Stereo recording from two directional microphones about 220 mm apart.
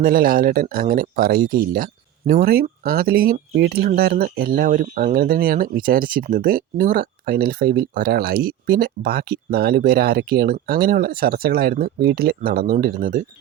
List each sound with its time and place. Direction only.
0.0 s speech: 40° right (ahead or behind)